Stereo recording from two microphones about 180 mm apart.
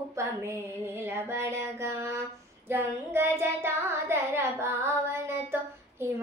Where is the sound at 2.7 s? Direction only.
15° right (ahead or behind).